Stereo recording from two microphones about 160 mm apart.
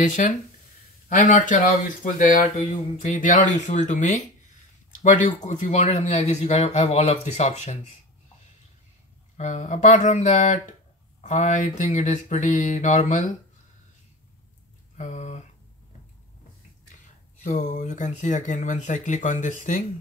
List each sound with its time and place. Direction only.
0.0 s speech: 50° left (ahead or behind)
9.4 s speech: 45° left (ahead or behind)
15.0 s a sound: 45° left (ahead or behind)
17.4 s speech: 50° left (ahead or behind)